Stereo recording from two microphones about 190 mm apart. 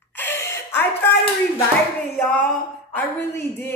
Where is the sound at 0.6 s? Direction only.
10° left (ahead or behind).